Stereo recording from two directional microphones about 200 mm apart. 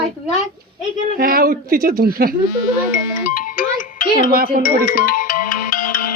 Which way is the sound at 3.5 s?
40° left (ahead or behind).